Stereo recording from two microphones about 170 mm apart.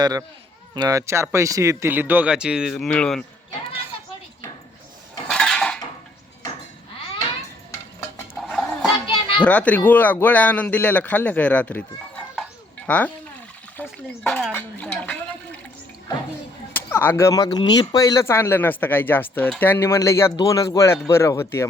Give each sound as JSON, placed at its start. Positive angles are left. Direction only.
{"t": 0.0, "sound": "speech", "side_deg": -20}
{"t": 5.3, "sound": "cutlery", "side_deg": 5}
{"t": 8.4, "sound": "goat", "side_deg": 0}
{"t": 9.4, "sound": "speech", "side_deg": 10}
{"t": 16.7, "sound": "speech", "side_deg": 10}